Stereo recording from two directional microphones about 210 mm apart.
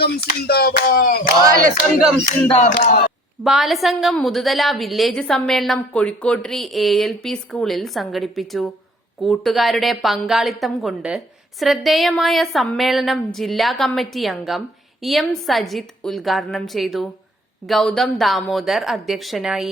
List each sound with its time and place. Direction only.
0.0 s a sound: 45° left (ahead or behind)
2.5 s speech: 35° left (ahead or behind)
3.4 s a woman's voice: centre (ahead or behind)